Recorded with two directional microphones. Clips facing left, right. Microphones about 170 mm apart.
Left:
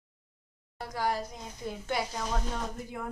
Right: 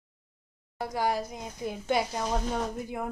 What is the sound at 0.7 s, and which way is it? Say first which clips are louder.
A woman's voice: right 3 dB; 15° right (ahead or behind).